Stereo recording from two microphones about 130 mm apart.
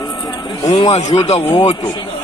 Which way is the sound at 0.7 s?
60° left (ahead or behind).